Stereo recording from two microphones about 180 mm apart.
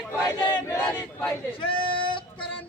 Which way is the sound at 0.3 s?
20° left (ahead or behind).